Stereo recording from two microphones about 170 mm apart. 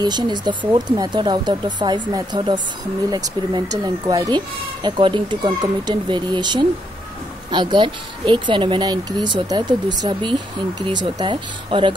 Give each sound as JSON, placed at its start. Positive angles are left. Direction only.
{"t": 0.0, "sound": "speech", "side_deg": -25}